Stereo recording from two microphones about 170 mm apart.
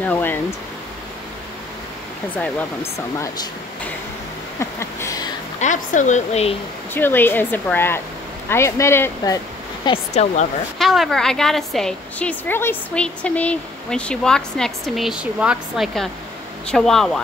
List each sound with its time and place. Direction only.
0.0 s speech: 10° left (ahead or behind)
4.6 s a sound: 15° left (ahead or behind)
5.6 s speech: 45° left (ahead or behind)
6.9 s speech: 10° left (ahead or behind)
10.8 s a woman's voice: centre (ahead or behind)